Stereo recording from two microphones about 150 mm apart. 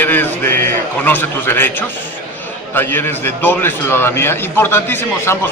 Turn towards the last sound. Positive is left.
turn(degrees=15)  # may be behind; listen again after turning